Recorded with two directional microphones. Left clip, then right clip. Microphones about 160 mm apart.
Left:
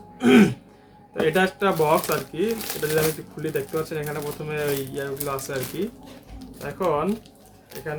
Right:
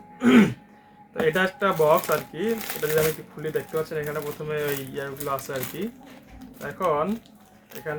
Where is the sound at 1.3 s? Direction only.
15° left (ahead or behind).